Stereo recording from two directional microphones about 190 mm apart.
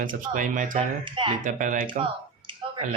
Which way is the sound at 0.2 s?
45° right (ahead or behind).